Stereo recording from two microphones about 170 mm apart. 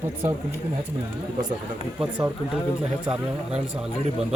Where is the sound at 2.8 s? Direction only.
5° right (ahead or behind).